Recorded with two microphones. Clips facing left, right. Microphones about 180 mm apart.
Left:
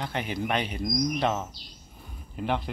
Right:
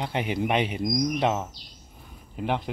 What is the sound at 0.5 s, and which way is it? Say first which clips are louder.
Speech: right 2 dB; 10° right (ahead or behind).